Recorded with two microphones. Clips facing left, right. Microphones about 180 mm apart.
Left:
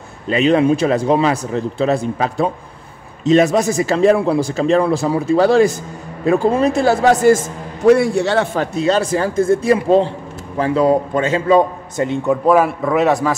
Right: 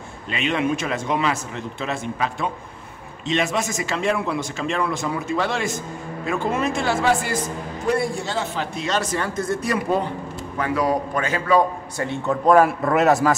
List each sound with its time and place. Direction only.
0.3 s speech: 35° left (ahead or behind)
7.8 s a man's voice: 80° left
9.1 s a man's voice: 30° left (ahead or behind)
12.3 s a man's voice: 5° left (ahead or behind)